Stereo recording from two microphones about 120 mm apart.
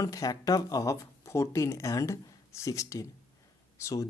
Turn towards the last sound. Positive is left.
turn(degrees=25)  # may be behind; listen again after turning